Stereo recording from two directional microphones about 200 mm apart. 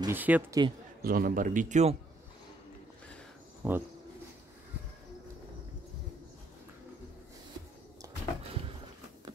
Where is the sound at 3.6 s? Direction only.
10° right (ahead or behind).